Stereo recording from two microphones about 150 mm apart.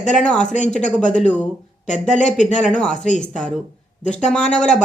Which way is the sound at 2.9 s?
55° left (ahead or behind).